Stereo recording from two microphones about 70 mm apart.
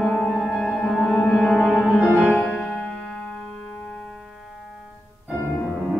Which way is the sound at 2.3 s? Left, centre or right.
Centre.